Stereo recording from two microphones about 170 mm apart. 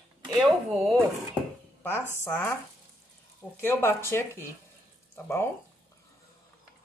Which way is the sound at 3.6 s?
15° left (ahead or behind).